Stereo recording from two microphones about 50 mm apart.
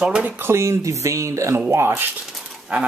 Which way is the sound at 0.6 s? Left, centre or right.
Right.